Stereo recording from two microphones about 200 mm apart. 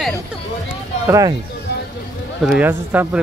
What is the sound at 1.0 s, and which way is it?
Speech, 15° right (ahead or behind).